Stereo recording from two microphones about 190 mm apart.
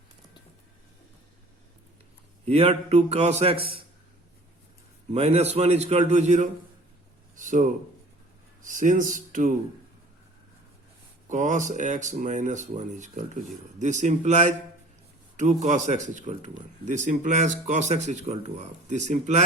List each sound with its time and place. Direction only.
2.4 s speech: 35° right (ahead or behind)
5.1 s speech: 35° right (ahead or behind)
11.3 s speech: 40° right (ahead or behind)